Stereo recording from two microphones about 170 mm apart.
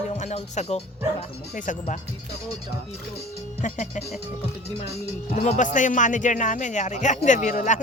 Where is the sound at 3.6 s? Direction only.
45° left (ahead or behind).